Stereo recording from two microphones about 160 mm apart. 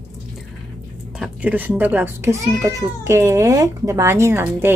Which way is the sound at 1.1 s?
5° right (ahead or behind).